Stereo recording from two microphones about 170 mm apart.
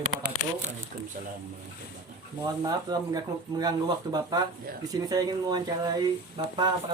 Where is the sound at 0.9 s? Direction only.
60° right (ahead or behind).